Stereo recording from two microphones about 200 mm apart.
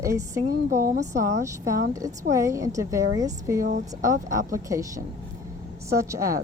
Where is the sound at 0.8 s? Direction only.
40° right (ahead or behind).